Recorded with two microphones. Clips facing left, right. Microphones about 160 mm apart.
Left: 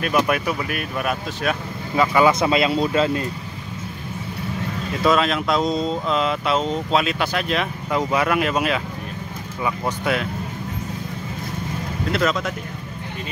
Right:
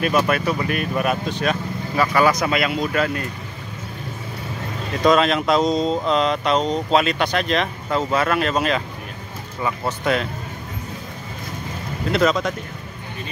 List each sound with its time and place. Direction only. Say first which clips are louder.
0.1 s speech: right 1 dB; 10° left (ahead or behind)
2.0 s speech: left 1 dB; 20° left (ahead or behind)
5.0 s speech: right 3 dB; centre (ahead or behind)
12.1 s speech: right 3 dB; centre (ahead or behind)